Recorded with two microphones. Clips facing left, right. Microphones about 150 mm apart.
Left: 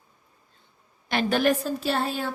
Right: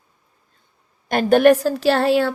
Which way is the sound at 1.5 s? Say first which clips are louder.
Right 9 dB; 85° right.